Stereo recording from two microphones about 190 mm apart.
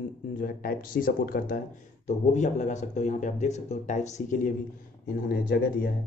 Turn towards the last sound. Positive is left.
turn(degrees=55)  # may be behind; listen again after turning